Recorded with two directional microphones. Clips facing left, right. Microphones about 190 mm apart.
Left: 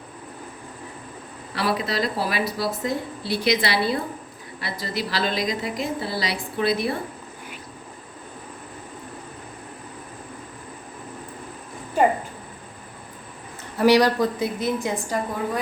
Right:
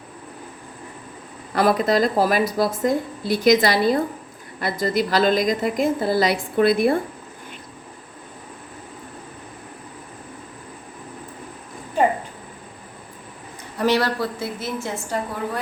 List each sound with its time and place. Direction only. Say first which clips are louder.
1.5 s speech: right 7 dB; 45° right (ahead or behind)
13.7 s a woman's voice: left 3 dB; 15° left (ahead or behind)